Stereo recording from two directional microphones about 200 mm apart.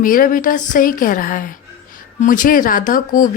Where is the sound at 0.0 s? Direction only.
45° left (ahead or behind).